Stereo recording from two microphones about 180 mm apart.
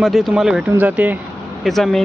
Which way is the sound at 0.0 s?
Centre (ahead or behind).